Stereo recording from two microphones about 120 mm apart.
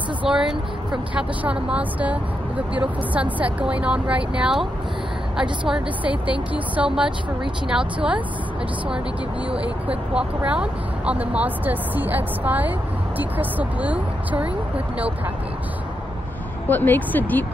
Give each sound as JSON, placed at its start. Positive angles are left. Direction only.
{"t": 0.2, "sound": "speech", "side_deg": -5}
{"t": 9.5, "sound": "speech", "side_deg": -10}
{"t": 16.6, "sound": "speech", "side_deg": 15}